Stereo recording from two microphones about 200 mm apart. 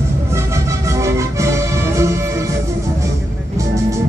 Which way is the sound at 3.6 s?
15° right (ahead or behind).